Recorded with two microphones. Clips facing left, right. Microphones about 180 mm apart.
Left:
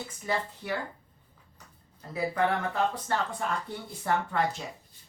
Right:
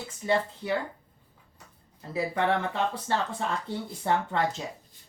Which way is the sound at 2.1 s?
25° right (ahead or behind).